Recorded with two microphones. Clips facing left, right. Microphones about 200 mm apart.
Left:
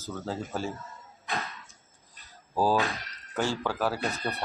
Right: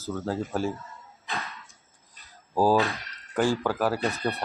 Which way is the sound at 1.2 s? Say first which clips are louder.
Left 1 dB; centre (ahead or behind).